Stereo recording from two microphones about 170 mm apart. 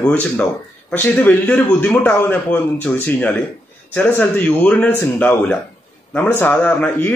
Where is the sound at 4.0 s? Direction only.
10° left (ahead or behind).